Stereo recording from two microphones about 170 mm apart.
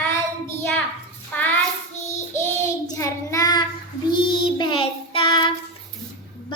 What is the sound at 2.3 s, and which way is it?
Child singing, 20° left (ahead or behind).